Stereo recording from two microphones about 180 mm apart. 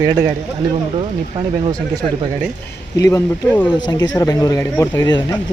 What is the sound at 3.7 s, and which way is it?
Speech, 25° left (ahead or behind).